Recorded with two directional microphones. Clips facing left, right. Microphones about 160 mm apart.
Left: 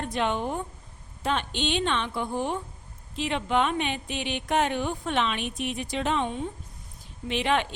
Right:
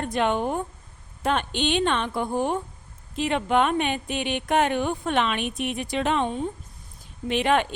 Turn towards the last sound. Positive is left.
turn(degrees=-50)  # may be behind; listen again after turning